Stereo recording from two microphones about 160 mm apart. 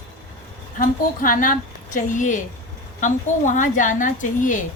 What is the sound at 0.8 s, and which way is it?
A woman's voice, 60° left (ahead or behind).